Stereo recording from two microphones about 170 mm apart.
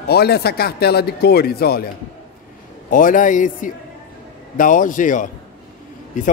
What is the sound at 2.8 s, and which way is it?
Speech, 50° left (ahead or behind).